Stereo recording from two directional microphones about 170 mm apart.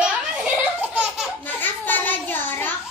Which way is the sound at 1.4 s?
10° left (ahead or behind).